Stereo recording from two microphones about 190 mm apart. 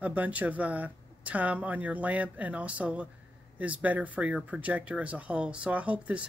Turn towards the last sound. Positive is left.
turn(degrees=-5)  # may be behind; listen again after turning